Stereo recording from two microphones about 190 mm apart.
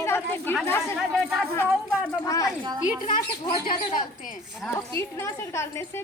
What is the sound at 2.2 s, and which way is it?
Speech, 15° left (ahead or behind).